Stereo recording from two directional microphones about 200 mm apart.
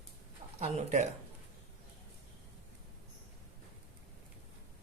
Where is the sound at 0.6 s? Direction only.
35° right (ahead or behind).